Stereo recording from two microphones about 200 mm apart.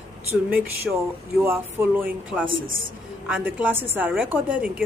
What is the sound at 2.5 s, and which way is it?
Speech, 75° right (ahead or behind).